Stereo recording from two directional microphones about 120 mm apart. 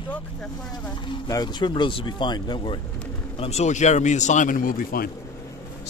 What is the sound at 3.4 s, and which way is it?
Speech, 65° left (ahead or behind).